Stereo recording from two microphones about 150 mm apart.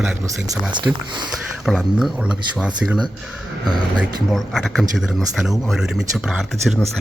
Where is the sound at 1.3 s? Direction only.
5° right (ahead or behind).